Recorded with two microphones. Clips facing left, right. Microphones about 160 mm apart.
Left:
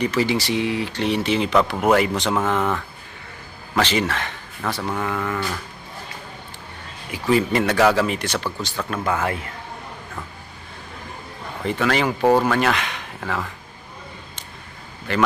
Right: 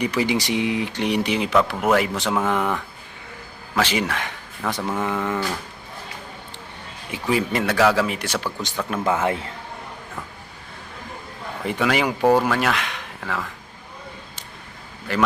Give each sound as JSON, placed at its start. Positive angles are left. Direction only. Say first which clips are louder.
{"t": 0.0, "sound": "speech", "louder": "left 1 dB", "side_deg": -15}
{"t": 5.0, "sound": "speech", "louder": "right 1 dB", "side_deg": -20}
{"t": 7.3, "sound": "speech", "louder": "left 3 dB", "side_deg": -5}
{"t": 8.6, "sound": "speech", "louder": "right 1 dB", "side_deg": -15}
{"t": 11.6, "sound": "speech", "louder": "left 1 dB", "side_deg": -10}